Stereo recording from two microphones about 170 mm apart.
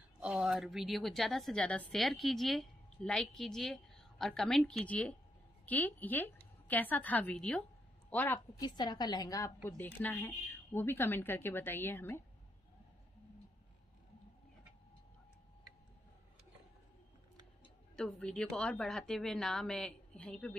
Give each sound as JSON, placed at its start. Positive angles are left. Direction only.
{"t": 0.2, "sound": "a woman's voice", "side_deg": -5}
{"t": 8.5, "sound": "a woman's voice", "side_deg": 25}
{"t": 9.7, "sound": "a woman's voice", "side_deg": 10}
{"t": 17.9, "sound": "a woman's voice", "side_deg": 5}